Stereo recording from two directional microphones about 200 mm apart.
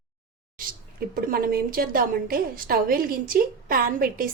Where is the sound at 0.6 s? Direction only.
45° right (ahead or behind).